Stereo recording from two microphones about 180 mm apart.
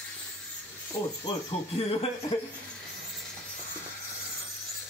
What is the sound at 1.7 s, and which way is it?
Speech, 35° left (ahead or behind).